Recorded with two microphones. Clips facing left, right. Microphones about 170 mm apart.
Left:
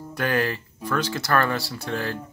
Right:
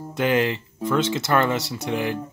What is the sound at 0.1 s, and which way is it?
Speech, 20° right (ahead or behind).